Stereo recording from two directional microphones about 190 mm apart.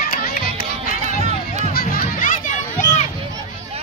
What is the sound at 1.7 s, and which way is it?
Music, 50° left (ahead or behind).